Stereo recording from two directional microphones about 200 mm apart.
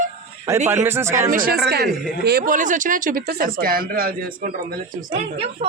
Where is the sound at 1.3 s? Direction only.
45° right (ahead or behind).